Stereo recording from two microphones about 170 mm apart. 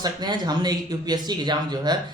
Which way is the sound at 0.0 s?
25° right (ahead or behind).